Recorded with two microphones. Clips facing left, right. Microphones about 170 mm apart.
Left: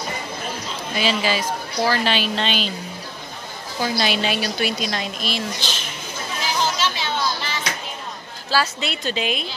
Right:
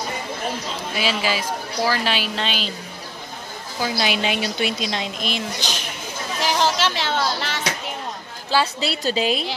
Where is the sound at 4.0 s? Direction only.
15° right (ahead or behind).